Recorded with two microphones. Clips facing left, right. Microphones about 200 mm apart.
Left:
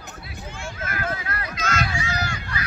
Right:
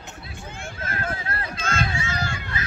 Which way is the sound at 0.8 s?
30° right (ahead or behind).